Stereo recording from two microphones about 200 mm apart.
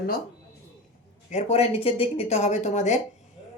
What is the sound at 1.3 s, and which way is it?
Speech, 35° left (ahead or behind).